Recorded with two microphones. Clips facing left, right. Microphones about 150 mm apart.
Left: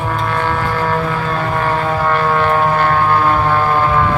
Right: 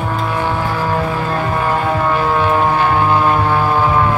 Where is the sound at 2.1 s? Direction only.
10° right (ahead or behind).